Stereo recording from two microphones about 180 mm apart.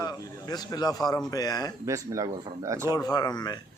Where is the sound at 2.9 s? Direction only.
20° left (ahead or behind).